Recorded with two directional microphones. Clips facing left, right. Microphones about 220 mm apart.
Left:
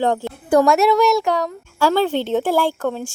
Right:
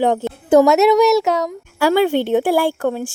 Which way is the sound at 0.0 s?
20° right (ahead or behind).